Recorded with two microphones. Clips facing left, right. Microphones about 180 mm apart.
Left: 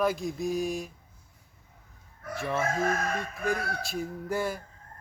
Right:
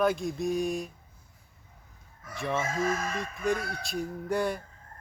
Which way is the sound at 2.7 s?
60° left (ahead or behind).